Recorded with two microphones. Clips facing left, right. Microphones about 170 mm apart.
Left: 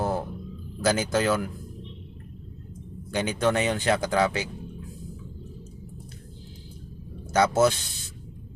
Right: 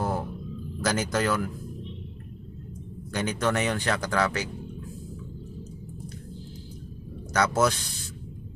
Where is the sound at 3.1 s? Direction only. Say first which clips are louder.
Left 2 dB; 25° left (ahead or behind).